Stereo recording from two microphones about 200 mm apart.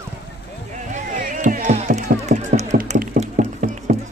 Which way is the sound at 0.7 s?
40° right (ahead or behind).